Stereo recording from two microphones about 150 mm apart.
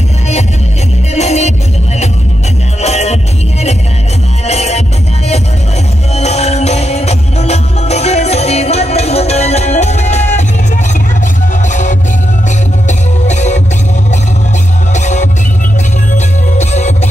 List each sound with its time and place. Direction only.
1.1 s music: 45° left (ahead or behind)
2.8 s music: 45° left (ahead or behind)
4.5 s music: 45° left (ahead or behind)
6.1 s music: 45° left (ahead or behind)
11.7 s music: 55° left (ahead or behind)
15.0 s music: 50° left (ahead or behind)
16.5 s music: 50° left (ahead or behind)